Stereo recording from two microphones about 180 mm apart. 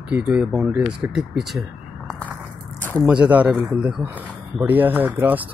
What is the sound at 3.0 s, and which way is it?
Speech, 5° right (ahead or behind).